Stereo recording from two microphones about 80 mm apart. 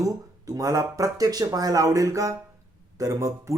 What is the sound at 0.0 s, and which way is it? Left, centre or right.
Speech, right.